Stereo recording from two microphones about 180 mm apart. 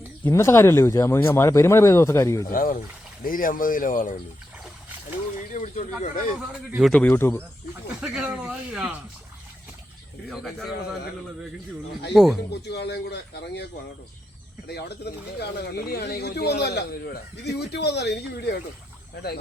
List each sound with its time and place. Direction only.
0.3 s speech: 15° left (ahead or behind)
2.5 s speech: 50° left (ahead or behind)
5.5 s speech: 40° left (ahead or behind)
6.5 s speech: 5° right (ahead or behind)
8.0 s speech: 5° right (ahead or behind)
10.2 s speech: centre (ahead or behind)
12.1 s speech: centre (ahead or behind)
12.5 s speech: 70° left (ahead or behind)
14.7 s speech: 65° left (ahead or behind)